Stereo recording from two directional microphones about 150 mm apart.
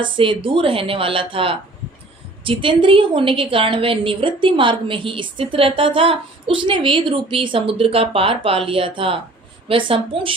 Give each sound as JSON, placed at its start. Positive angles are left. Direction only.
{"t": 0.0, "sound": "a woman's voice", "side_deg": -35}